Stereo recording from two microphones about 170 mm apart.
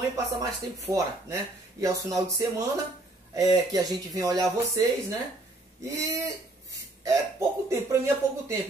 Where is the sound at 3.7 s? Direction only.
20° right (ahead or behind).